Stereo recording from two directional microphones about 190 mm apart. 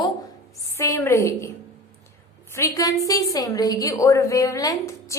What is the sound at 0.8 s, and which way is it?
Speech, 15° left (ahead or behind).